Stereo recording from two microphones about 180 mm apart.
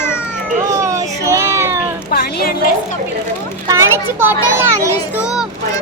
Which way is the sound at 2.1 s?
60° left (ahead or behind).